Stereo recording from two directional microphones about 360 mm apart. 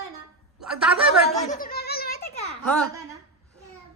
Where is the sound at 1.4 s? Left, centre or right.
Left.